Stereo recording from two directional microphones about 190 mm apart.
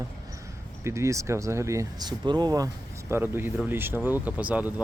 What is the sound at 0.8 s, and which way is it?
Speech, 15° right (ahead or behind).